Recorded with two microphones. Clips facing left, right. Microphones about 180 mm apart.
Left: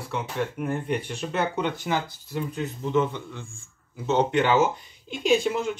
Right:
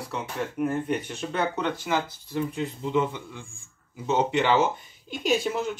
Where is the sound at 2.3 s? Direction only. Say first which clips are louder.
Right 1 dB; 5° right (ahead or behind).